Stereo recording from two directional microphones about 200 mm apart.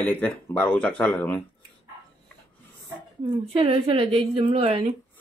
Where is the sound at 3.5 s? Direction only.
30° right (ahead or behind).